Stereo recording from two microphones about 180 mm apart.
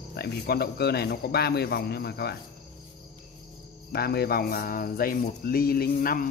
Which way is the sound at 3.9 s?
60° left (ahead or behind).